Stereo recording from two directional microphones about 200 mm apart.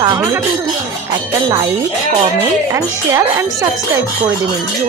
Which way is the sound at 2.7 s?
15° right (ahead or behind).